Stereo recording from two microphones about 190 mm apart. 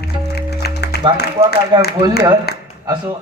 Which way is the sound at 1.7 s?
25° right (ahead or behind).